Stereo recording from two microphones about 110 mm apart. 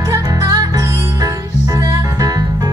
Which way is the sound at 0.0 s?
30° right (ahead or behind).